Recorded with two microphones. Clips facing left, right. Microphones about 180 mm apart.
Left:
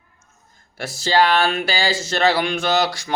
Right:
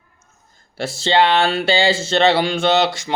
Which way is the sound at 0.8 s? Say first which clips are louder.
Right 2 dB; 25° right (ahead or behind).